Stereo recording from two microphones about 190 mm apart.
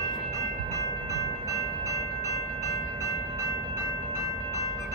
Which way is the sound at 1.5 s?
15° right (ahead or behind).